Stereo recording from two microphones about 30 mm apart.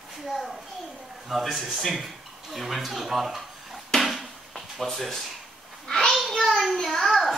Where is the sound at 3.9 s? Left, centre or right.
Centre.